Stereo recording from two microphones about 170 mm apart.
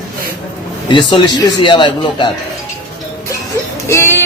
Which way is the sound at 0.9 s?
25° left (ahead or behind).